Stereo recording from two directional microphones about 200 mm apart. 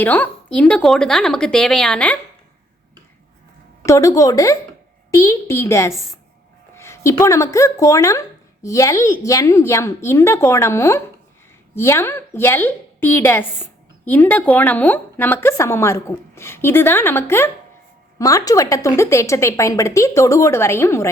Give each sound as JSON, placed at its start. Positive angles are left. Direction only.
{"t": 0.0, "sound": "speech", "side_deg": 10}
{"t": 3.8, "sound": "a woman's voice", "side_deg": 15}